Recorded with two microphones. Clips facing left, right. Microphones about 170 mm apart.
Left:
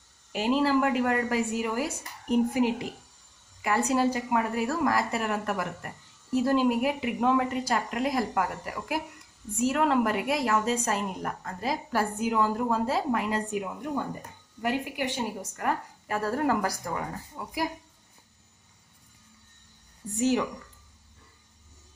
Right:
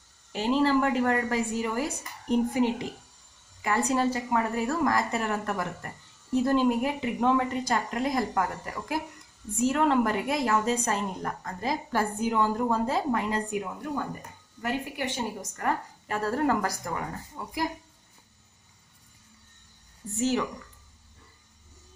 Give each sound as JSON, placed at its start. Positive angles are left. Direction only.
{"t": 0.3, "sound": "a woman's voice", "side_deg": 10}
{"t": 13.6, "sound": "a woman's voice", "side_deg": 15}
{"t": 20.2, "sound": "a woman's voice", "side_deg": 15}